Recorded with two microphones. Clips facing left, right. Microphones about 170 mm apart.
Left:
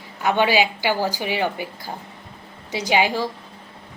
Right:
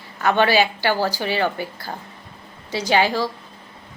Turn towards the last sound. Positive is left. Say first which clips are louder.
# right 1 dB
turn(degrees=15)  # may be behind; listen again after turning